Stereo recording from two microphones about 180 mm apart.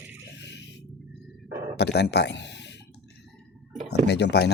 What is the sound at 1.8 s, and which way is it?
Speech, 65° left (ahead or behind).